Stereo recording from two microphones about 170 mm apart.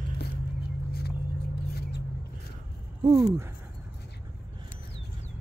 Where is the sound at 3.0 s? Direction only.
20° right (ahead or behind).